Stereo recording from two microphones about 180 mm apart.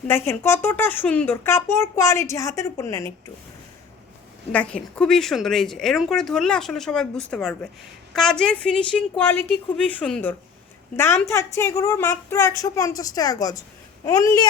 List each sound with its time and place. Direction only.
0.1 s speech: 15° left (ahead or behind)
4.5 s speech: 5° left (ahead or behind)